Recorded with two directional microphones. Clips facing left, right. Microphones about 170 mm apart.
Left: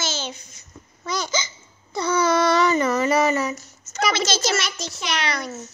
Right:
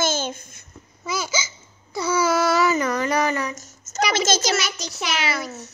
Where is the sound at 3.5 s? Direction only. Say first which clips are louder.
Left 1 dB; 45° right (ahead or behind).